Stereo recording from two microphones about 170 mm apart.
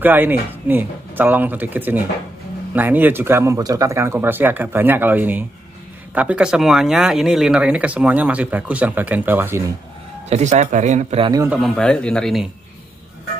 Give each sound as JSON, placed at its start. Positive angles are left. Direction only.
{"t": 0.0, "sound": "speech", "side_deg": -10}
{"t": 10.3, "sound": "speech", "side_deg": -45}
{"t": 11.6, "sound": "speech", "side_deg": 5}